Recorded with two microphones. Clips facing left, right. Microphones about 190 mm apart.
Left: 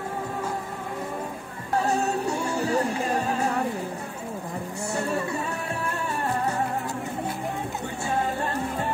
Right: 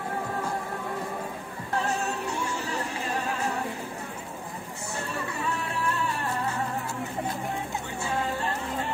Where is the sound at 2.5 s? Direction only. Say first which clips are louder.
Left 8 dB; 40° left (ahead or behind).